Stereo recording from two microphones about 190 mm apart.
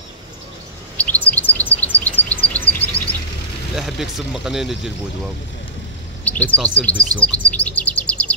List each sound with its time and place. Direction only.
0.9 s chirp: 10° left (ahead or behind)
2.8 s bird: 10° left (ahead or behind)
3.7 s speech: centre (ahead or behind)
6.2 s chirp: 5° left (ahead or behind)